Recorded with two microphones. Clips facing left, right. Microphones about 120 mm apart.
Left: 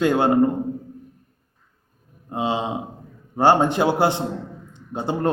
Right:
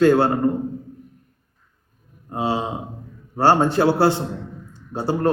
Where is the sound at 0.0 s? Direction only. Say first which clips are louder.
Right 4 dB; 15° left (ahead or behind).